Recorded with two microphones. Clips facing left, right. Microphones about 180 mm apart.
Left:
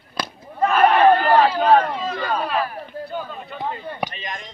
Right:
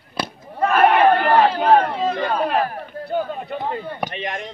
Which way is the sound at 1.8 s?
50° right (ahead or behind).